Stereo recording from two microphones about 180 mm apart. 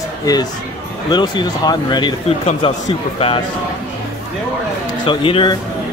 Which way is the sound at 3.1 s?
30° left (ahead or behind).